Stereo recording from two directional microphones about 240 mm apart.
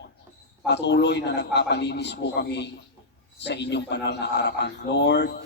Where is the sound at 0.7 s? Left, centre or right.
Left.